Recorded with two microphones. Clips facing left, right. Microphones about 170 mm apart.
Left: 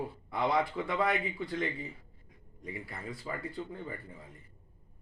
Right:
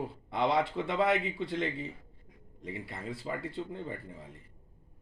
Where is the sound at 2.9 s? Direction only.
25° right (ahead or behind).